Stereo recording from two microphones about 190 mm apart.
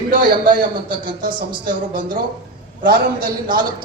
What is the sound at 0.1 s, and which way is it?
Speech, 45° right (ahead or behind).